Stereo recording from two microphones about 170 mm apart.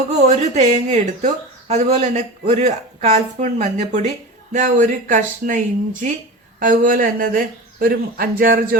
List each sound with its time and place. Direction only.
0.1 s speech: 40° right (ahead or behind); by 8.8 s 55° right (ahead or behind)